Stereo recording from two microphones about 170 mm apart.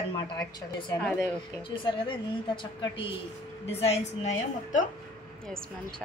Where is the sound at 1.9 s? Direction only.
30° left (ahead or behind).